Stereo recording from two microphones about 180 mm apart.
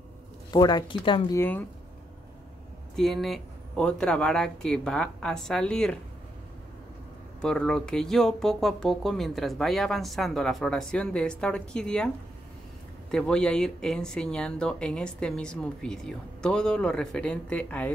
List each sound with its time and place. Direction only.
0.5 s speech: 20° left (ahead or behind)
1.4 s speech: 10° left (ahead or behind)
3.0 s speech: centre (ahead or behind)
7.4 s speech: 5° left (ahead or behind)
13.1 s speech: 5° left (ahead or behind)